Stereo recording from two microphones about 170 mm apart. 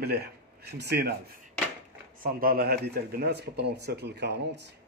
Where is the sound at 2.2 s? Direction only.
60° right (ahead or behind); by 4.6 s 90° right.